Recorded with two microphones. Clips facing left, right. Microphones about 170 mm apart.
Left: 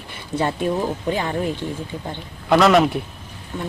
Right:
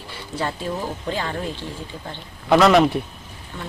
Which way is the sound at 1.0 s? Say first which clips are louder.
Left 4 dB; 15° left (ahead or behind).